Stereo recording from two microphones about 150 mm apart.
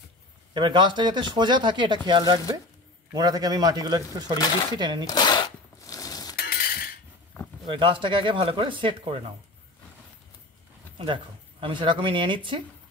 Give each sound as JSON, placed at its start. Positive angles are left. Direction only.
{"t": 0.6, "sound": "a man's voice", "side_deg": -35}
{"t": 5.0, "sound": "a sound", "side_deg": 25}
{"t": 6.3, "sound": "chink", "side_deg": 90}
{"t": 7.7, "sound": "speech", "side_deg": -35}
{"t": 11.6, "sound": "speech", "side_deg": -35}